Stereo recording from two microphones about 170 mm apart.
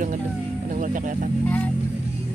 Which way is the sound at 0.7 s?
50° right (ahead or behind).